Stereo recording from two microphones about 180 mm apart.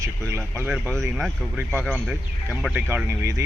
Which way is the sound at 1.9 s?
10° right (ahead or behind).